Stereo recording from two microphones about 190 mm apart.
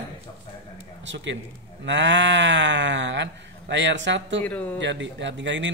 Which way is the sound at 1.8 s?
70° right (ahead or behind).